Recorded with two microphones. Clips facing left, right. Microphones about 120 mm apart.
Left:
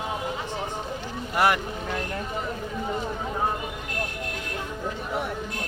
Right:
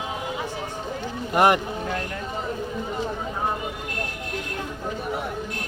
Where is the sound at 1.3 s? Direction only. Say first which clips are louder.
Right 4 dB; 20° right (ahead or behind).